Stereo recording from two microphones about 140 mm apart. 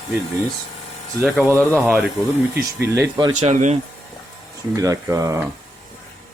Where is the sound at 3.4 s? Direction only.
60° right (ahead or behind).